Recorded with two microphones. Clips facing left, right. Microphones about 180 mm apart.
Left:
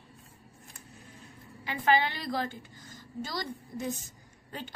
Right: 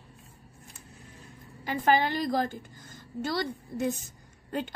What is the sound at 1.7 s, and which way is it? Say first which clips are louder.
Speech: right 2 dB; 45° right (ahead or behind).